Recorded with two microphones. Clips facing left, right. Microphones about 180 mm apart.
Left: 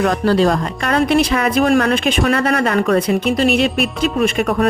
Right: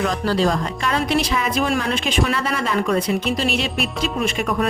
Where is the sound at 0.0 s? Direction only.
60° left (ahead or behind).